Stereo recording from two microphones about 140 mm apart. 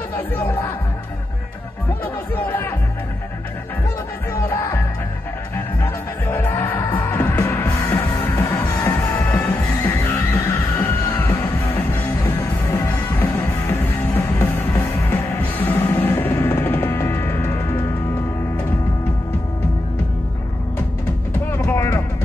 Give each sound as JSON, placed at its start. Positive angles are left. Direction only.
{"t": 0.1, "sound": "speech", "side_deg": 15}
{"t": 2.3, "sound": "music", "side_deg": 15}
{"t": 4.5, "sound": "music", "side_deg": 15}
{"t": 21.5, "sound": "music", "side_deg": 20}